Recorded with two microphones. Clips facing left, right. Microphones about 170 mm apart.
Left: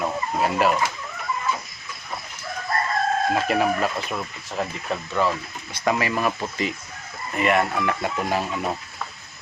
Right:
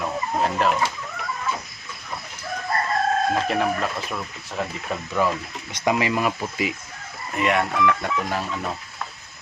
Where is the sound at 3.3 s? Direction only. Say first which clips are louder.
Left 1 dB; 5° left (ahead or behind).